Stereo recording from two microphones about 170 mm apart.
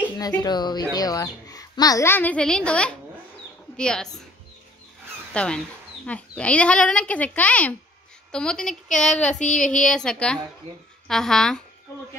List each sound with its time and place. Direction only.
0.4 s a child's voice: 25° left (ahead or behind); by 4.1 s 5° left (ahead or behind)
5.3 s a child's voice: 5° left (ahead or behind)
11.9 s a child's voice: 15° left (ahead or behind)